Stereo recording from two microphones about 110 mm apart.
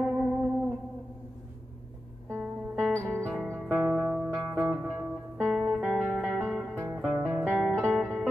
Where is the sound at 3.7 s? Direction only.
10° right (ahead or behind).